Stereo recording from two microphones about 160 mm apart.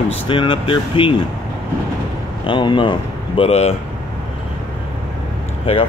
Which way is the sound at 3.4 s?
40° left (ahead or behind).